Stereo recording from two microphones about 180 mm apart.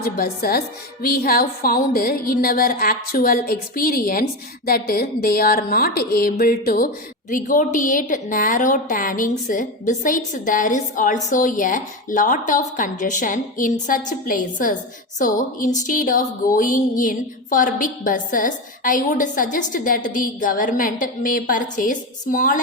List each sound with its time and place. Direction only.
0.0 s a woman's voice: 55° left (ahead or behind)